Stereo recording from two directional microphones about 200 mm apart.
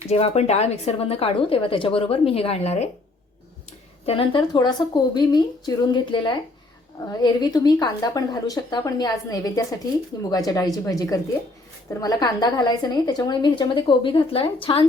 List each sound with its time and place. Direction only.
0.1 s a woman's voice: 30° left (ahead or behind)
4.0 s a woman's voice: 25° left (ahead or behind)